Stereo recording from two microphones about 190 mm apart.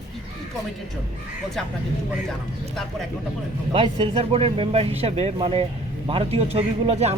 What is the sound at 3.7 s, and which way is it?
Speech, 25° right (ahead or behind).